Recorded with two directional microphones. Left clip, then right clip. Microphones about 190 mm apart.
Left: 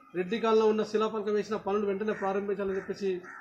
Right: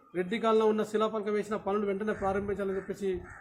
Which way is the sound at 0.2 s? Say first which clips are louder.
Left 1 dB; 15° right (ahead or behind).